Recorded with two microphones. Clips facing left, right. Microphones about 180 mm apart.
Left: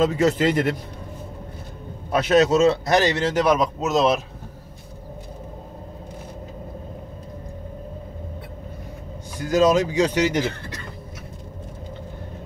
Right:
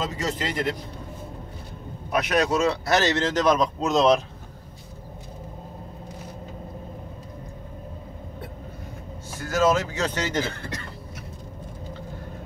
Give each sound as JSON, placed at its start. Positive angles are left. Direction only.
{"t": 0.0, "sound": "a man's voice", "side_deg": 55}
{"t": 2.0, "sound": "a man's voice", "side_deg": 30}
{"t": 9.4, "sound": "a man's voice", "side_deg": 15}